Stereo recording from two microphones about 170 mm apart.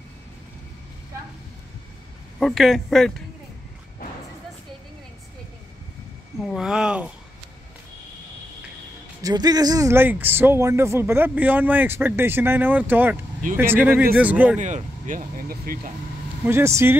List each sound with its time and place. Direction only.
2.4 s speech: centre (ahead or behind)
6.4 s speech: centre (ahead or behind)
9.2 s speech: 25° right (ahead or behind)
14.6 s speech: 50° right (ahead or behind)
16.4 s speech: 15° right (ahead or behind)